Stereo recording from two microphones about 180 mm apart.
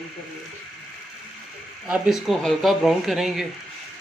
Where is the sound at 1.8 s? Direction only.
5° right (ahead or behind).